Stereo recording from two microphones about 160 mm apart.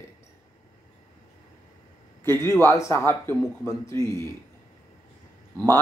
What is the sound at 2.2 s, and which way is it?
Speech, 15° left (ahead or behind).